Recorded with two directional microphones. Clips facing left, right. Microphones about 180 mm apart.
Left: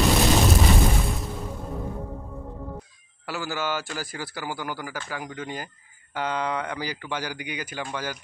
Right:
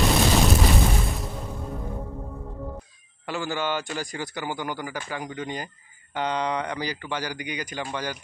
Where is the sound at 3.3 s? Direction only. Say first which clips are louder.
Right 1 dB; 5° left (ahead or behind).